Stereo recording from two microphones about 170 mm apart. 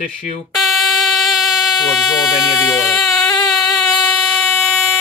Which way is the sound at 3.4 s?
Centre (ahead or behind).